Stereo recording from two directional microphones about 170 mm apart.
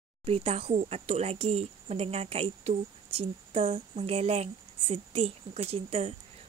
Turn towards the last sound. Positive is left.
turn(degrees=-35)  # may be behind; listen again after turning